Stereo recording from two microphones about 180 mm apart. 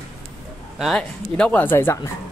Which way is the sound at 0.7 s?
Centre (ahead or behind).